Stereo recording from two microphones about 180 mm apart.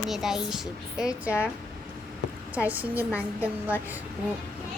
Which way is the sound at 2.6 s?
10° right (ahead or behind).